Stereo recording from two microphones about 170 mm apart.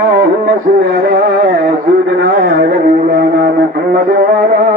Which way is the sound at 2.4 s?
55° right (ahead or behind).